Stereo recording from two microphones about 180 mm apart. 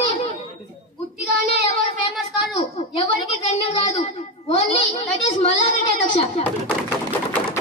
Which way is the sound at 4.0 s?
30° left (ahead or behind).